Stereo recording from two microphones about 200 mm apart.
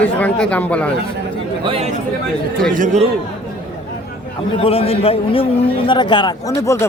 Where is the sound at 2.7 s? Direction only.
35° right (ahead or behind).